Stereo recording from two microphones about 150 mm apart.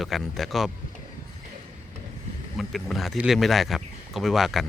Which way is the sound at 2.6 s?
Centre (ahead or behind).